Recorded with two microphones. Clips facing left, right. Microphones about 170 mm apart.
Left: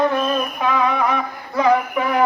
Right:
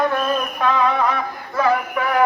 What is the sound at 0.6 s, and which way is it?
Music, 15° left (ahead or behind).